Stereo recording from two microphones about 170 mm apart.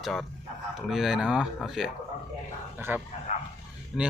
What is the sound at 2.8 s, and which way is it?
Speech, 10° right (ahead or behind).